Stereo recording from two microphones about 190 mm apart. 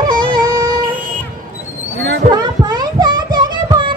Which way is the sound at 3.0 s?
25° right (ahead or behind).